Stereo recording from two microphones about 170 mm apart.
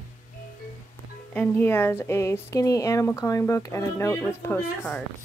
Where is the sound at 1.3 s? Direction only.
10° left (ahead or behind).